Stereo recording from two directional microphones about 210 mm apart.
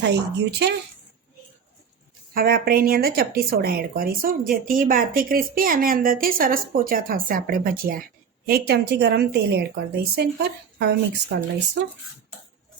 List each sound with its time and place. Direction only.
0.0 s speech: 55° right (ahead or behind)
2.3 s a woman's voice: 45° right (ahead or behind)